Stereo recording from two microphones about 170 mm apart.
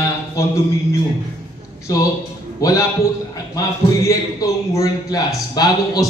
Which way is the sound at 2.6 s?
20° left (ahead or behind).